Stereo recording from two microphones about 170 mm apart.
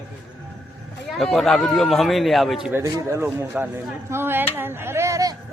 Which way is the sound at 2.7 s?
15° right (ahead or behind).